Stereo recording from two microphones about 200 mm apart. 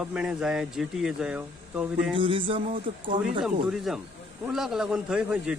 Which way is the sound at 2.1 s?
25° right (ahead or behind).